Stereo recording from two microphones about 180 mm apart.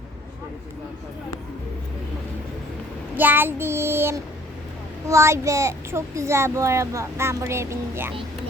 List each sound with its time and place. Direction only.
3.2 s a child's voice: 10° right (ahead or behind)